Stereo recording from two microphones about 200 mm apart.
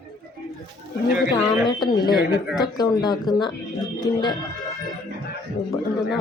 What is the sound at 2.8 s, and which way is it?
Speech, 20° left (ahead or behind).